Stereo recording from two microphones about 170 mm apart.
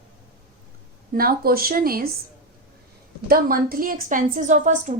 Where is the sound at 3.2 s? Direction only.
60° right (ahead or behind).